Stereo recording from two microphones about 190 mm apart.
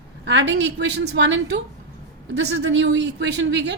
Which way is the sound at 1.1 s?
65° right (ahead or behind).